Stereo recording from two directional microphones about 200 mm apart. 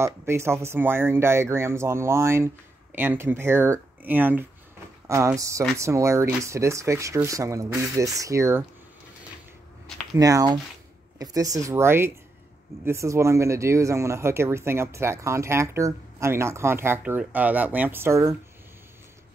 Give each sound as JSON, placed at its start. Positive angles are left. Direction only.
{"t": 0.0, "sound": "speech", "side_deg": -15}
{"t": 10.1, "sound": "speech", "side_deg": -15}